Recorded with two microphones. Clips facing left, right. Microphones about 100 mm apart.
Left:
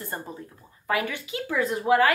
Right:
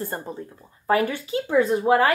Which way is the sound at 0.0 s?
30° right (ahead or behind).